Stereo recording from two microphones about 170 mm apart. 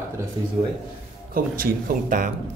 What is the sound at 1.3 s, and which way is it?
Speech, 60° right (ahead or behind).